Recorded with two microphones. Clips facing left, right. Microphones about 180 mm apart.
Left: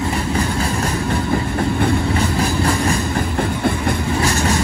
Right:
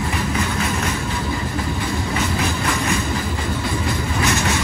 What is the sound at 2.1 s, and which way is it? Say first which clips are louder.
Train: left 4 dB; 35° left (ahead or behind).